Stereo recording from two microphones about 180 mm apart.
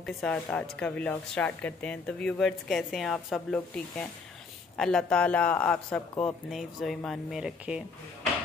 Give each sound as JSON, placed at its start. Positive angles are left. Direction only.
{"t": 0.0, "sound": "speech", "side_deg": 5}